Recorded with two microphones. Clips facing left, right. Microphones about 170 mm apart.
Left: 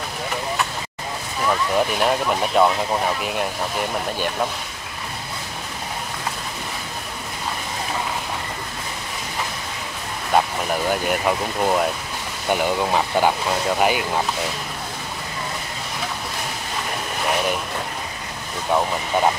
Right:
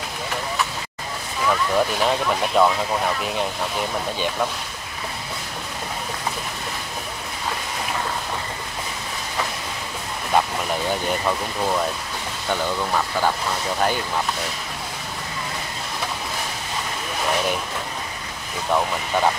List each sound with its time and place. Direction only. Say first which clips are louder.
1.5 s speech: even; 5° left (ahead or behind)
10.9 s speech: left 3 dB; 10° left (ahead or behind)
18.7 s speech: left 1 dB; 10° left (ahead or behind)